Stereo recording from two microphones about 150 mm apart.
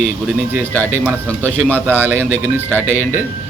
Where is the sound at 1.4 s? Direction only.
10° left (ahead or behind).